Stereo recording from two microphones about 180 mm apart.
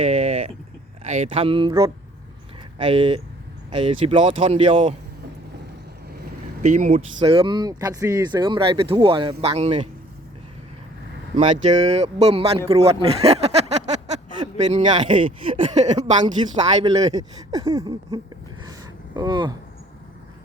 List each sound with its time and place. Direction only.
0.0 s a sound: 35° right (ahead or behind)
1.0 s speech: 35° right (ahead or behind)
6.6 s speech: 40° right (ahead or behind)
7.2 s speech: 30° right (ahead or behind)
11.3 s speech: 40° right (ahead or behind)
12.8 s a sound: 35° right (ahead or behind)
14.3 s a sound: 25° right (ahead or behind)
14.9 s speech: 30° right (ahead or behind)
16.8 s speech: 20° right (ahead or behind)